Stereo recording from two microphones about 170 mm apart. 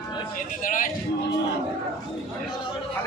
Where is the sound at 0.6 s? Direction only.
50° left (ahead or behind).